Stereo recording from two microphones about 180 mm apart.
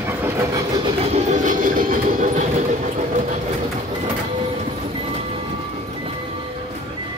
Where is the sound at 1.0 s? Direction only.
40° right (ahead or behind).